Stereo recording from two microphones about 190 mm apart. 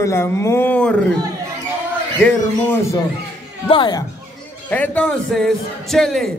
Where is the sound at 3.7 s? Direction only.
25° left (ahead or behind).